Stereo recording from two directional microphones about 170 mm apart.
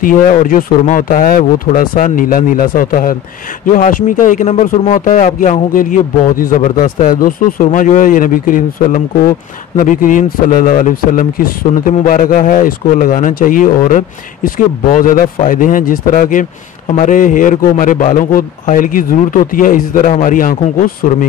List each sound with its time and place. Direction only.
0.0 s a man's voice: 55° left (ahead or behind)